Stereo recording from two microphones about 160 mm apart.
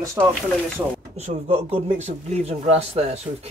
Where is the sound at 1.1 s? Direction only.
45° right (ahead or behind).